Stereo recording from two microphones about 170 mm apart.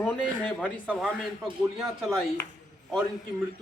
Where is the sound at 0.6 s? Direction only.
5° right (ahead or behind).